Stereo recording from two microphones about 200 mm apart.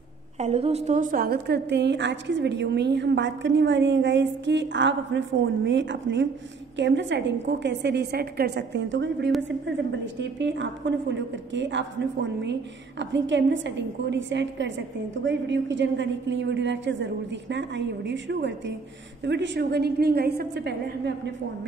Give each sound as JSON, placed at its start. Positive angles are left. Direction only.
{"t": 0.4, "sound": "a woman's voice", "side_deg": -30}